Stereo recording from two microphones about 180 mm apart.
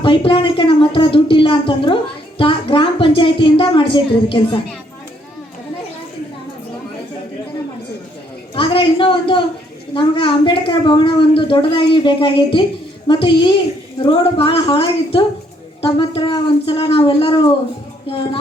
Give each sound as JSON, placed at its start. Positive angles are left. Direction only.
{"t": 0.0, "sound": "a woman's voice", "side_deg": 30}
{"t": 8.5, "sound": "a woman's voice", "side_deg": 30}